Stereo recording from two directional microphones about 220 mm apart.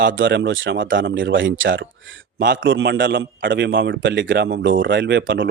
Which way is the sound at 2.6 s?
60° right (ahead or behind).